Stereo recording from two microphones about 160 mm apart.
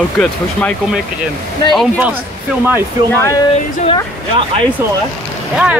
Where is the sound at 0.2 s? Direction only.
5° left (ahead or behind).